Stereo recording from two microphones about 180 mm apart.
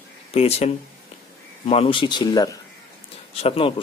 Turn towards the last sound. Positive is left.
turn(degrees=30)  # may be behind; listen again after turning